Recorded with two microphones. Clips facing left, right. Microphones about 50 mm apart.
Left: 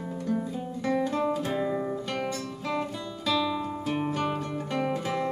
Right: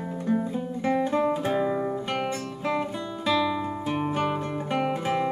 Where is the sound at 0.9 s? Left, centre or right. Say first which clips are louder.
Right 2 dB; right.